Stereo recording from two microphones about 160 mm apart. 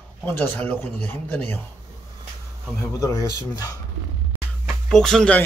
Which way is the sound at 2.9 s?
20° left (ahead or behind).